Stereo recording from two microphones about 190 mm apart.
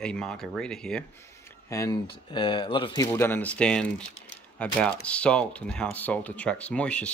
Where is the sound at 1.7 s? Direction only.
15° left (ahead or behind).